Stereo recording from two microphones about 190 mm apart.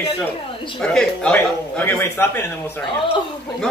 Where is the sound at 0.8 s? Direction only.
5° left (ahead or behind).